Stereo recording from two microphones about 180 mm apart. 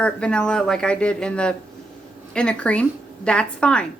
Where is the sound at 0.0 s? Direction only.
5° left (ahead or behind).